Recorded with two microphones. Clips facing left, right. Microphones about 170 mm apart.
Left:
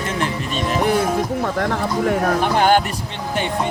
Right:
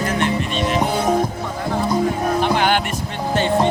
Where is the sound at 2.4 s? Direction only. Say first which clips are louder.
Left 2 dB; 40° left (ahead or behind).